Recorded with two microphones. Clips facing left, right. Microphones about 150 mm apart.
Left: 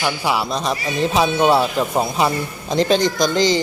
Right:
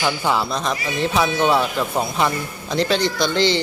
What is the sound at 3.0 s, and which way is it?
Speech, 45° left (ahead or behind).